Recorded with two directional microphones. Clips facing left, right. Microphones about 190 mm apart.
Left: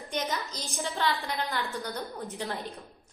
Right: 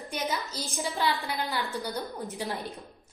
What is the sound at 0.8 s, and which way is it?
Speech, 15° right (ahead or behind).